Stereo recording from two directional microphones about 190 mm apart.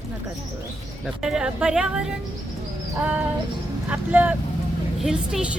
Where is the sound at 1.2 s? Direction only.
5° right (ahead or behind).